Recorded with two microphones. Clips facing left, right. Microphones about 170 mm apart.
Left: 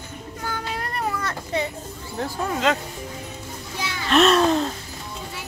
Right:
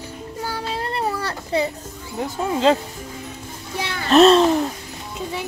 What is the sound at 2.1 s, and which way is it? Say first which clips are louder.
Speech: right 3 dB; 25° right (ahead or behind).